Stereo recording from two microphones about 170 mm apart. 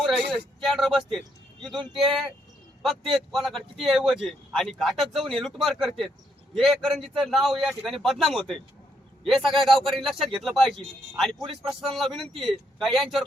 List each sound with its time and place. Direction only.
0.0 s a man's voice: centre (ahead or behind)
1.7 s speech: 30° right (ahead or behind)
2.0 s a man's voice: centre (ahead or behind)